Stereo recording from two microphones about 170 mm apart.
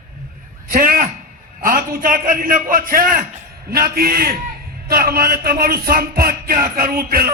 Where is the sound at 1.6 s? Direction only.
55° right (ahead or behind).